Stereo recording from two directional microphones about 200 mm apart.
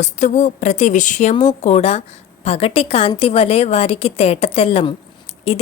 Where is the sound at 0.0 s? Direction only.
35° left (ahead or behind).